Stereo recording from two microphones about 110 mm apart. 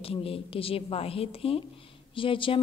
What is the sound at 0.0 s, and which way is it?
A woman's voice, 60° left (ahead or behind).